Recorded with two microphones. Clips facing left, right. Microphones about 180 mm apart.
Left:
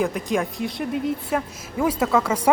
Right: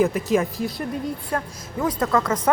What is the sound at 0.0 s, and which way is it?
Speech, centre (ahead or behind).